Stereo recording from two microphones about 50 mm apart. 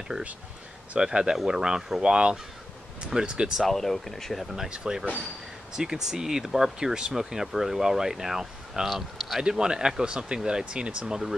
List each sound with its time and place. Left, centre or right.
0.9 s speech: centre
3.5 s speech: centre
4.6 s speech: centre
9.4 s speech: centre